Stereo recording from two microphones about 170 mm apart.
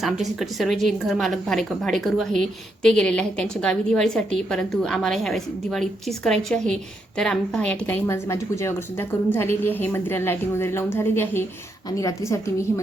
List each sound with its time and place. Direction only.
0.0 s a woman's voice: centre (ahead or behind); by 12.8 s 20° left (ahead or behind)